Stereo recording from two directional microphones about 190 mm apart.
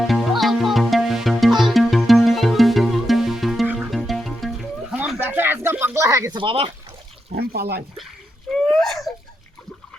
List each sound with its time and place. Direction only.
0.1 s music: centre (ahead or behind); by 6.7 s 25° right (ahead or behind)
7.3 s speech: 55° right (ahead or behind)
8.4 s whimper: centre (ahead or behind)